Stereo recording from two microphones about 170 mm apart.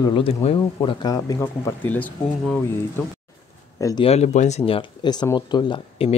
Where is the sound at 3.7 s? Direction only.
20° left (ahead or behind).